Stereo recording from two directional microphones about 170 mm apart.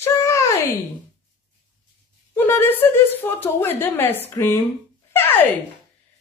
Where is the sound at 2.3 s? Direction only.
15° left (ahead or behind).